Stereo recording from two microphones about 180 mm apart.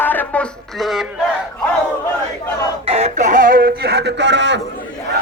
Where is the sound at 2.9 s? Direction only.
40° right (ahead or behind); by 4.6 s 80° right.